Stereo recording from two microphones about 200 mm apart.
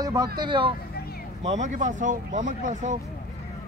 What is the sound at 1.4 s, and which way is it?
Speech, 35° right (ahead or behind).